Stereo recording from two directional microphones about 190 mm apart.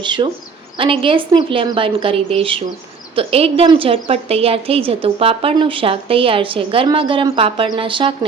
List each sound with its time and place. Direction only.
0.0 s a woman's voice: 25° right (ahead or behind)